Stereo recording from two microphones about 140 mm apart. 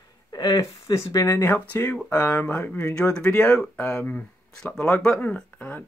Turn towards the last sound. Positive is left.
turn(degrees=10)  # may be behind; listen again after turning